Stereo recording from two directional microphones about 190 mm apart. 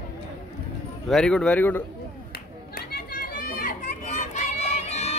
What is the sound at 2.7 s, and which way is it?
Children playing, 50° left (ahead or behind).